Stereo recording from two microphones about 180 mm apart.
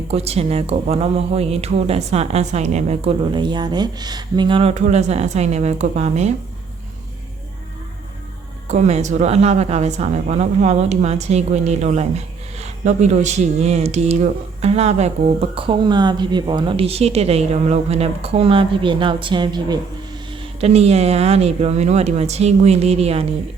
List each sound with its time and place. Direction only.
0.1 s speech: 35° right (ahead or behind)
8.6 s speech: 40° right (ahead or behind); by 19.8 s 25° right (ahead or behind)
20.6 s speech: 35° right (ahead or behind)